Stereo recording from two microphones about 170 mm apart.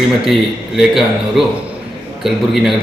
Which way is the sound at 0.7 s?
Centre (ahead or behind).